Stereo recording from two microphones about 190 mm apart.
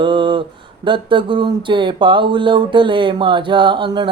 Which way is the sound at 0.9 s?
25° right (ahead or behind).